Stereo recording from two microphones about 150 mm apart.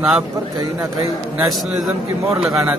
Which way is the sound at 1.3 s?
Centre (ahead or behind).